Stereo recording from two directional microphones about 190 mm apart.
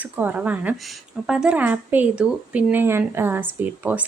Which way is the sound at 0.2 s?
10° right (ahead or behind).